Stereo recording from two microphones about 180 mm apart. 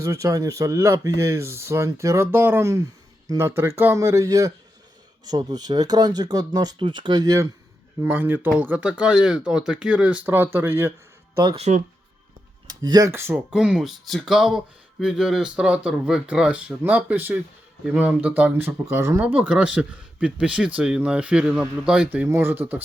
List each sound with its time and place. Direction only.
0.0 s speech: 15° right (ahead or behind)
11.5 s speech: 35° right (ahead or behind)
12.6 s speech: 20° right (ahead or behind)